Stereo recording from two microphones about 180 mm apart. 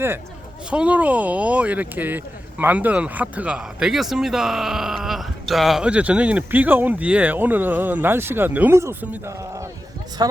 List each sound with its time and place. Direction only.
0.7 s speech: 5° right (ahead or behind)